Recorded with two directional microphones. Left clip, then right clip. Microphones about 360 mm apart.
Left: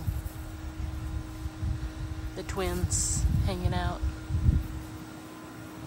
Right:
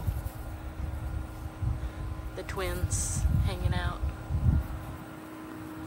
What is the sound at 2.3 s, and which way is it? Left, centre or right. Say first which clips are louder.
Speech: left 2 dB; centre.